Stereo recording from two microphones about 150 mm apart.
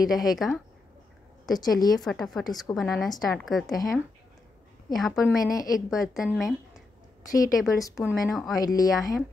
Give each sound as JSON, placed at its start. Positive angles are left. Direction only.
{"t": 0.1, "sound": "a woman's voice", "side_deg": 0}
{"t": 1.4, "sound": "speech", "side_deg": 25}
{"t": 2.0, "sound": "a woman's voice", "side_deg": 0}
{"t": 3.7, "sound": "speech", "side_deg": 25}
{"t": 4.8, "sound": "a woman's voice", "side_deg": 0}
{"t": 5.4, "sound": "speech", "side_deg": 25}
{"t": 5.8, "sound": "a woman's voice", "side_deg": 0}
{"t": 7.2, "sound": "speech", "side_deg": 25}
{"t": 8.1, "sound": "a woman's voice", "side_deg": 0}
{"t": 8.7, "sound": "speech", "side_deg": 25}